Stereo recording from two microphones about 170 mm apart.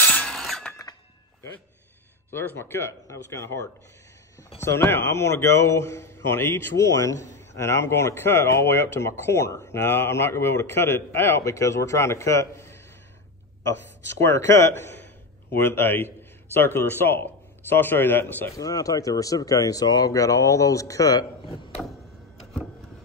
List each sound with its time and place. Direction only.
0.0 s a sound: 10° left (ahead or behind)
2.3 s a man's voice: 15° left (ahead or behind)
14.2 s a man's voice: 15° left (ahead or behind)